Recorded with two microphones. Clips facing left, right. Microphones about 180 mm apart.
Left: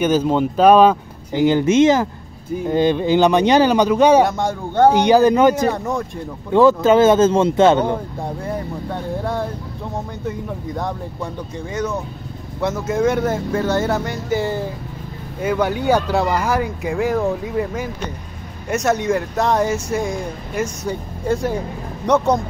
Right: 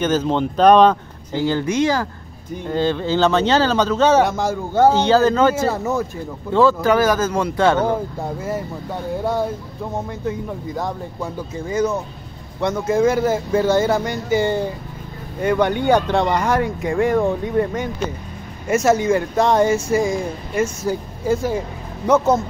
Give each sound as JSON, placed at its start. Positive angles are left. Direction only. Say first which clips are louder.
{"t": 0.0, "sound": "speech", "louder": "left 2 dB", "side_deg": 10}
{"t": 4.2, "sound": "speech", "louder": "left 1 dB", "side_deg": 0}
{"t": 4.9, "sound": "speech", "louder": "left 2 dB", "side_deg": 15}
{"t": 5.7, "sound": "speech", "louder": "even", "side_deg": -5}
{"t": 6.5, "sound": "speech", "louder": "left 3 dB", "side_deg": 20}
{"t": 8.2, "sound": "speech", "louder": "even", "side_deg": -5}